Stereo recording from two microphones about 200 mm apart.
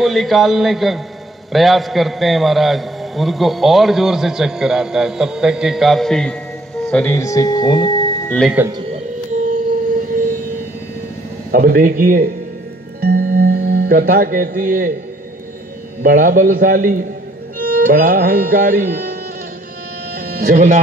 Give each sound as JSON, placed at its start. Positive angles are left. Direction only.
{"t": 0.0, "sound": "a man's voice", "side_deg": 0}
{"t": 8.3, "sound": "a man's voice", "side_deg": 5}
{"t": 8.7, "sound": "music", "side_deg": -35}
{"t": 11.5, "sound": "music", "side_deg": -45}
{"t": 16.0, "sound": "music", "side_deg": -45}
{"t": 20.2, "sound": "speech", "side_deg": -45}